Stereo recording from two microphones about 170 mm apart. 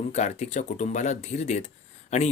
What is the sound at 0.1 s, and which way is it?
Speech, 45° left (ahead or behind).